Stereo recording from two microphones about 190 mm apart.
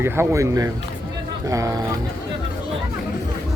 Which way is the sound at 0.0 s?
15° right (ahead or behind).